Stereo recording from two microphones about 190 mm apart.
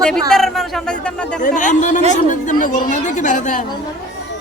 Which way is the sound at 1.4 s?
40° left (ahead or behind).